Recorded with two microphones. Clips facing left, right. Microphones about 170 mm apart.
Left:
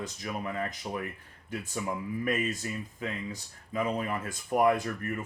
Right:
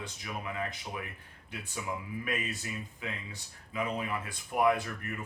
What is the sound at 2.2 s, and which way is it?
Speech, 40° left (ahead or behind).